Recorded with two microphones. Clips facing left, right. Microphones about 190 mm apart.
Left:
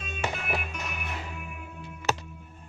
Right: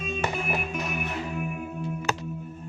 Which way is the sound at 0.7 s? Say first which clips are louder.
Right 7 dB; 50° right (ahead or behind).